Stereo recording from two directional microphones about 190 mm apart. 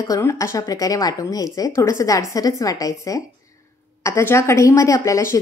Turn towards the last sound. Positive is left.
turn(degrees=15)  # may be behind; listen again after turning